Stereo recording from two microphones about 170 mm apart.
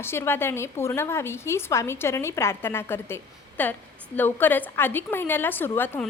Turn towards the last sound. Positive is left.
turn(degrees=10)  # may be behind; listen again after turning